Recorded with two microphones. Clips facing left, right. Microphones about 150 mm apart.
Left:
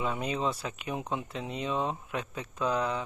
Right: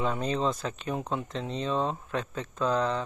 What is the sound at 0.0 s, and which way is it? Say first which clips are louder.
Speech: right 3 dB; 10° left (ahead or behind).